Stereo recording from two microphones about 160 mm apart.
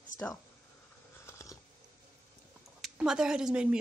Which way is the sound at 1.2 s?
20° left (ahead or behind).